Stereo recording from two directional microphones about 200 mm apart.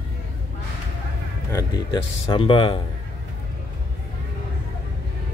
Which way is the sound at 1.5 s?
15° left (ahead or behind).